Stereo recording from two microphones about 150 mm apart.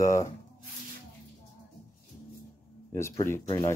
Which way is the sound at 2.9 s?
20° left (ahead or behind).